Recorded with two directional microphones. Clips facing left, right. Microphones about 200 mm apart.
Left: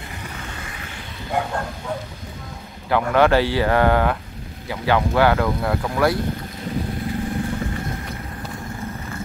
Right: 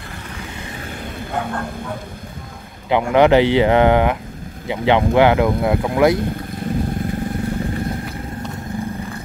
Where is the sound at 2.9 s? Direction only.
20° right (ahead or behind).